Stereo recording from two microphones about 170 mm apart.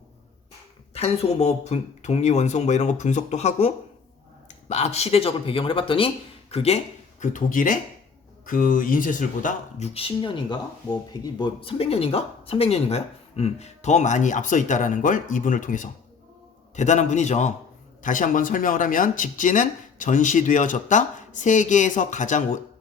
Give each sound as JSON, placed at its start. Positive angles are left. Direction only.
{"t": 0.9, "sound": "speech", "side_deg": 35}
{"t": 7.2, "sound": "speech", "side_deg": 50}